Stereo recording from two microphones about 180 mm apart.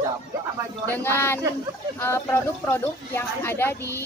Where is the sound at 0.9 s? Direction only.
10° left (ahead or behind).